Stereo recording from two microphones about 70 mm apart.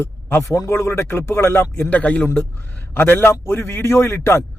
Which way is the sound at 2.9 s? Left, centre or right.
Left.